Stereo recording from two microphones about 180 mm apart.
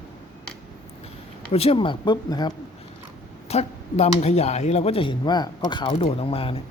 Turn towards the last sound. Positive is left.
turn(degrees=30)  # may be behind; listen again after turning